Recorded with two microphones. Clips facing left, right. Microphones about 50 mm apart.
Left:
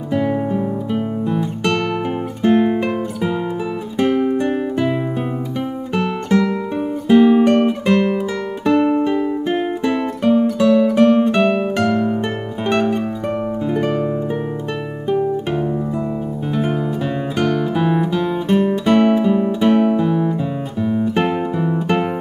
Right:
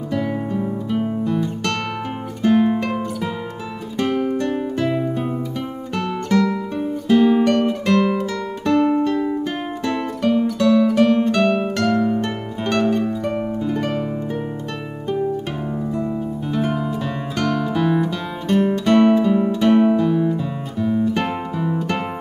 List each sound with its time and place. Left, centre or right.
0.1 s music: centre
2.4 s guitar: centre
4.0 s music: centre
11.5 s harp: centre
13.7 s music: centre
16.5 s music: centre